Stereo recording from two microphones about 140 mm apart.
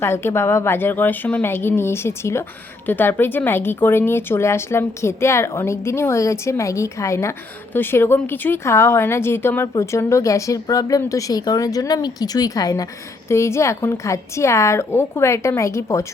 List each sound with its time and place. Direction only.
0.0 s speech: 15° left (ahead or behind)